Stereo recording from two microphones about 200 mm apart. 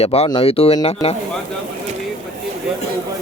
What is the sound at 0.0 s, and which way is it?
Speech, 30° left (ahead or behind).